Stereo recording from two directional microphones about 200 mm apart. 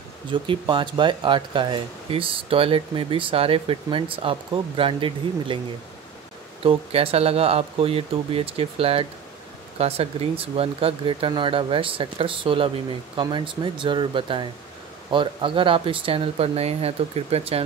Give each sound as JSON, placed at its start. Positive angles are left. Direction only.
{"t": 0.3, "sound": "speech", "side_deg": -25}
{"t": 6.6, "sound": "speech", "side_deg": -30}